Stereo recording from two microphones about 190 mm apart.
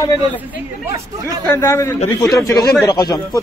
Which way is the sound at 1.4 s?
15° left (ahead or behind).